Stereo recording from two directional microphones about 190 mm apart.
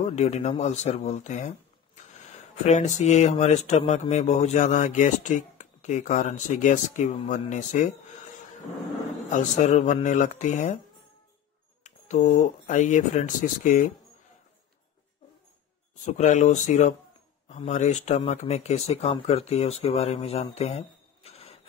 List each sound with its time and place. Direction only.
0.0 s speech: 35° left (ahead or behind)
9.3 s speech: 40° left (ahead or behind)
11.8 s speech: 40° left (ahead or behind)
16.1 s speech: 40° left (ahead or behind)